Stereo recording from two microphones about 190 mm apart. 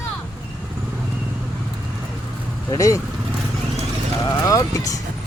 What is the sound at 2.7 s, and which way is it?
Speech, 15° left (ahead or behind).